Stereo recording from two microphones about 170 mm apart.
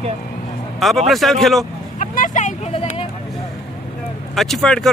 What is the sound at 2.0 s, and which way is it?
Vehicle, 50° left (ahead or behind).